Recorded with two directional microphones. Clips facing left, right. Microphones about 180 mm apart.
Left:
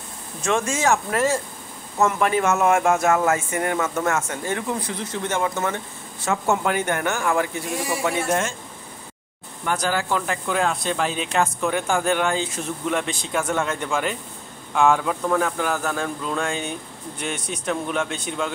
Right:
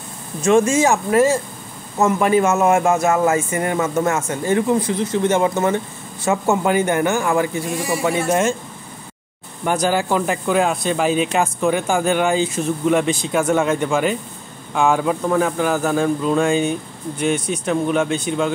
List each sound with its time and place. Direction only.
0.4 s speech: 5° right (ahead or behind)
4.9 s speech: 20° right (ahead or behind)
6.2 s speech: 5° right (ahead or behind)
9.7 s speech: 15° right (ahead or behind)